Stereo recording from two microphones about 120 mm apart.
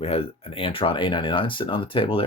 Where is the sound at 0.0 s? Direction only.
55° left (ahead or behind).